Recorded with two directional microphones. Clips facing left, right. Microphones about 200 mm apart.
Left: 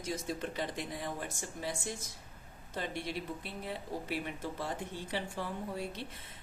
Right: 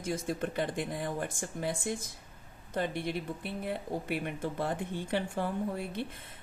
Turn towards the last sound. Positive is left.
turn(degrees=-55)  # may be behind; listen again after turning